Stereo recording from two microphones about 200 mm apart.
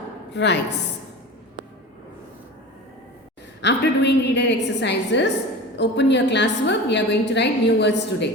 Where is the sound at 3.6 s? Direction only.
60° left (ahead or behind).